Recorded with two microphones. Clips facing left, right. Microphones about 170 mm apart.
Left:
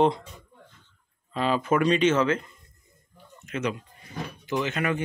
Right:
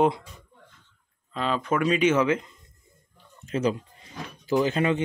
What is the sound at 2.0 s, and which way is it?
Speech, 10° right (ahead or behind).